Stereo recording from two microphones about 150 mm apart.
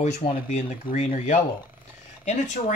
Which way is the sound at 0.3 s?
50° left (ahead or behind).